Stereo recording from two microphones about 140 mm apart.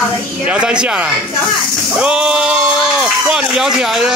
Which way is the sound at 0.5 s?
5° right (ahead or behind).